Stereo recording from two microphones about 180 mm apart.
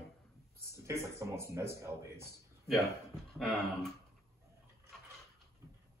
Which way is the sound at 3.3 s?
Centre (ahead or behind).